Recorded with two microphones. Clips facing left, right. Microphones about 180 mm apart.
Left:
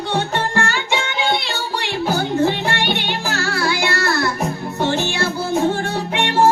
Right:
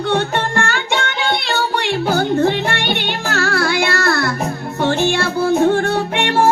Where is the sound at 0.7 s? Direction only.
55° right (ahead or behind).